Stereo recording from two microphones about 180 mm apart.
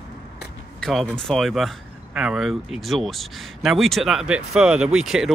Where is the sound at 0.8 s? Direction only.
Centre (ahead or behind).